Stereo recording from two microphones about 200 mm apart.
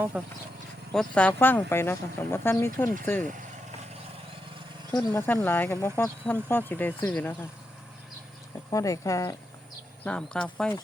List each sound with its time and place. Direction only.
0.1 s speech: 5° right (ahead or behind)
0.9 s speech: 5° left (ahead or behind)
4.9 s speech: 20° left (ahead or behind)
5.2 s speech: 10° left (ahead or behind)
8.7 s speech: 15° left (ahead or behind)
10.0 s speech: 5° left (ahead or behind)